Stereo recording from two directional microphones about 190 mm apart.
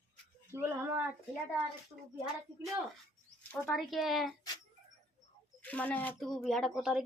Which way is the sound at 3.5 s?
Centre (ahead or behind).